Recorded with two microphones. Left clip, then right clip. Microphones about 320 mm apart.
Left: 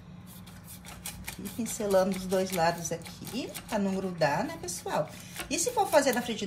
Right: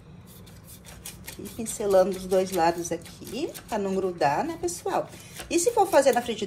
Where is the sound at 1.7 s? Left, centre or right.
Right.